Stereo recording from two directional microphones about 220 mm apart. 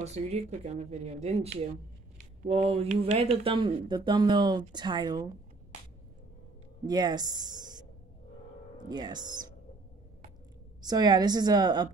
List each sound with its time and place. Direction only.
0.0 s speech: 30° right (ahead or behind)
6.9 s speech: 20° right (ahead or behind)
8.8 s speech: 20° right (ahead or behind)
10.8 s speech: 20° right (ahead or behind)